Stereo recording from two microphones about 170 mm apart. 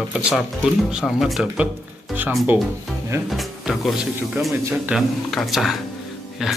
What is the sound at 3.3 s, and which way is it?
Speech, centre (ahead or behind).